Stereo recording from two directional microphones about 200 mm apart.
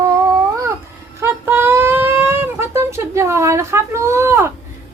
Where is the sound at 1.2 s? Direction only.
10° right (ahead or behind).